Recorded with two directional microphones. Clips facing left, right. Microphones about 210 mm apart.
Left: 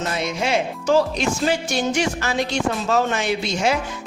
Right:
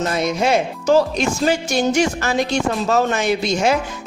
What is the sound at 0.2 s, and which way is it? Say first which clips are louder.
A man's voice: right 4 dB; 40° right (ahead or behind).